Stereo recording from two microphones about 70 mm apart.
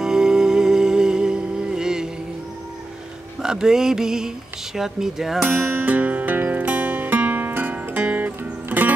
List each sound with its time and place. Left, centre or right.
0.0 s music: centre
3.4 s mantra: centre
4.7 s speech: centre
5.5 s music: right